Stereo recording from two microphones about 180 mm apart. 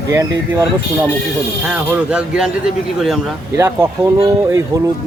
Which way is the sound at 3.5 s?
15° right (ahead or behind).